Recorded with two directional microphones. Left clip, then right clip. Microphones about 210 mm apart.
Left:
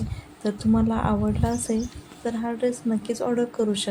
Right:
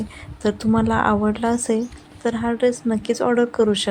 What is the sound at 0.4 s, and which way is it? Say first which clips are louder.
Speech: right 4 dB; 20° right (ahead or behind).